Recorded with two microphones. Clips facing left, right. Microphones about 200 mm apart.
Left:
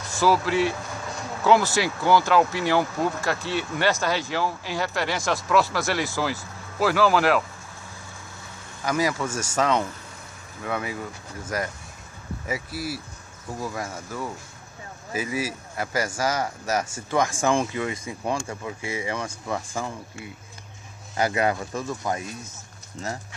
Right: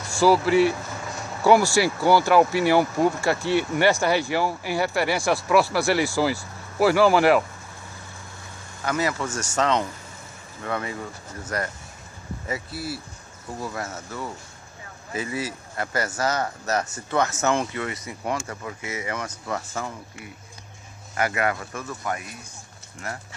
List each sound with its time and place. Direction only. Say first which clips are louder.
0.1 s speech: right 4 dB; 10° right (ahead or behind)
8.8 s speech: left 1 dB; 10° left (ahead or behind)
12.7 s speech: left 1 dB; 90° left
13.6 s speech: even; 10° left (ahead or behind)
17.9 s speech: left 1 dB; 25° left (ahead or behind)
18.5 s speech: left 1 dB; 15° left (ahead or behind)
18.9 s speech: left 2 dB; 30° left (ahead or behind)
19.2 s speech: left 1 dB; 10° left (ahead or behind)
21.2 s speech: left 2 dB; 25° left (ahead or behind)